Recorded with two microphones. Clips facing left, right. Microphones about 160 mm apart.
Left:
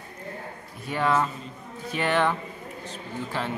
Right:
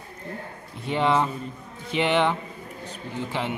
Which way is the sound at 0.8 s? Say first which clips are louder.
Right 2 dB; 20° right (ahead or behind).